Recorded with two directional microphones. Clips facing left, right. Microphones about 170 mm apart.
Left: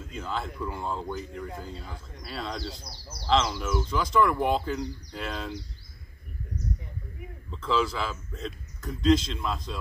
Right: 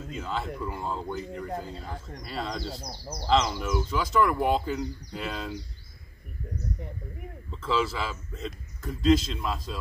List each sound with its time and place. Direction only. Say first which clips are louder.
0.1 s speech: right 1 dB; 5° right (ahead or behind)
2.7 s speech: right 7 dB; 45° right (ahead or behind)
3.3 s speech: right 1 dB; 5° right (ahead or behind)
7.5 s speech: left 1 dB; 5° right (ahead or behind)